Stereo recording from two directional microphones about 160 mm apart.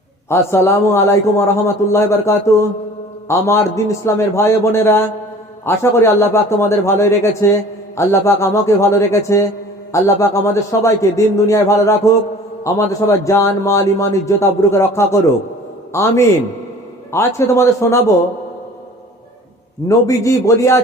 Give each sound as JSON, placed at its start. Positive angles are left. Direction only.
{"t": 0.3, "sound": "a man's voice", "side_deg": 15}
{"t": 19.9, "sound": "a man's voice", "side_deg": 20}